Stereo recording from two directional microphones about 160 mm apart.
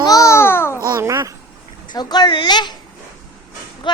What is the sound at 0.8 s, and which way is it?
Speech, 20° right (ahead or behind).